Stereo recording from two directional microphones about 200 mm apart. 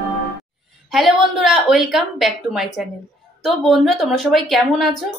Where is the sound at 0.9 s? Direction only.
Centre (ahead or behind).